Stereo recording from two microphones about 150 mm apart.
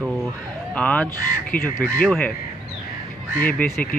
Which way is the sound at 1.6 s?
70° left (ahead or behind).